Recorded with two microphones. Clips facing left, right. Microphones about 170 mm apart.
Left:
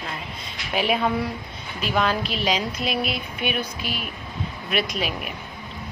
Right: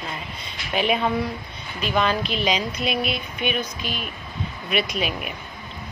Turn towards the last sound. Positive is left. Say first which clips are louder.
# right 1 dB
turn(degrees=0)  # may be behind; listen again after turning